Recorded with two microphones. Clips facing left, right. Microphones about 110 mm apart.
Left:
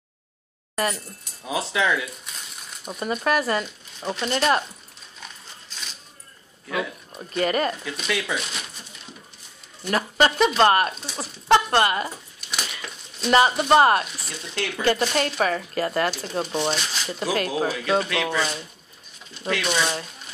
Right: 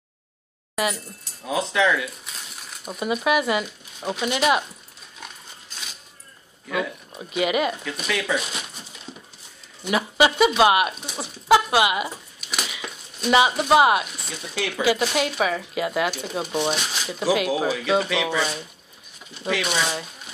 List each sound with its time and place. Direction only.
1.4 s speech: centre (ahead or behind)
6.7 s speech: 5° right (ahead or behind)
9.8 s speech: 5° right (ahead or behind)